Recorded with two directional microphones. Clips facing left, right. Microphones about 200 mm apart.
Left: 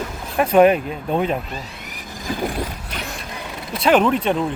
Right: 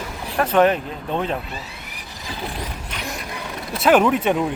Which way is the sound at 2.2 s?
45° left (ahead or behind).